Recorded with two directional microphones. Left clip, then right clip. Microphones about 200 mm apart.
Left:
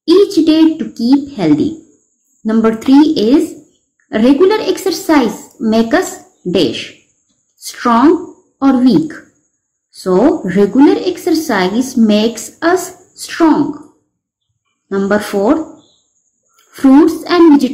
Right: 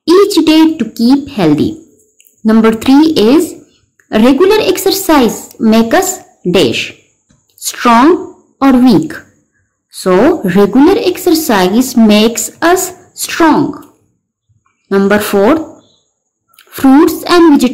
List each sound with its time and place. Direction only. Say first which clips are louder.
0.0 s a sound: right 2 dB; 30° right (ahead or behind)
0.7 s a woman's voice: right 2 dB; 30° right (ahead or behind)
14.9 s a woman's voice: right 5 dB; 30° right (ahead or behind)
16.5 s speech: right 1 dB; 30° right (ahead or behind)